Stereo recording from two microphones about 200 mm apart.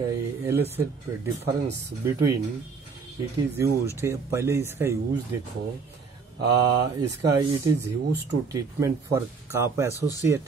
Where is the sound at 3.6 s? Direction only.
15° right (ahead or behind).